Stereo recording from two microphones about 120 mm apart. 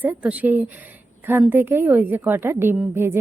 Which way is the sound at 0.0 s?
10° right (ahead or behind).